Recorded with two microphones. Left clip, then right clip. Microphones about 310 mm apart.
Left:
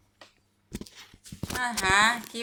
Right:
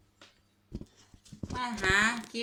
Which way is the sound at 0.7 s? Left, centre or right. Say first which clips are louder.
Left 6 dB; left.